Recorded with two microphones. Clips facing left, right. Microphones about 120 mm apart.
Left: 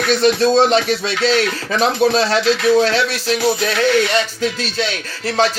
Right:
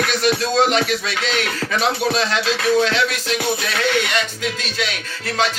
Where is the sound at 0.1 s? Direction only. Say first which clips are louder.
Left 6 dB; 30° left (ahead or behind).